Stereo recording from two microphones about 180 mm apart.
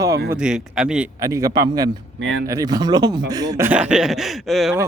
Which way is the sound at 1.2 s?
20° right (ahead or behind).